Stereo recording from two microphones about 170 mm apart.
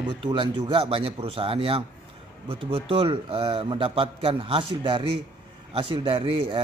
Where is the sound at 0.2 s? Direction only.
30° right (ahead or behind).